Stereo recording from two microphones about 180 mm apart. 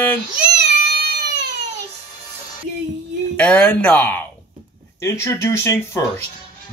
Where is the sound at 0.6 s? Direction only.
65° right (ahead or behind).